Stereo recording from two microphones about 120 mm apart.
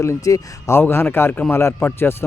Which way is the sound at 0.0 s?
25° left (ahead or behind).